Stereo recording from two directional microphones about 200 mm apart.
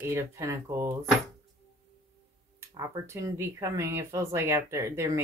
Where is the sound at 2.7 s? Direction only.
20° right (ahead or behind).